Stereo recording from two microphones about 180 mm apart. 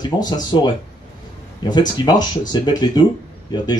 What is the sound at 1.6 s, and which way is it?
Speech, 25° left (ahead or behind).